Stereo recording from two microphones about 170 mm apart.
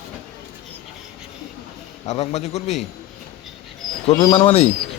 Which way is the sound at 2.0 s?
40° left (ahead or behind).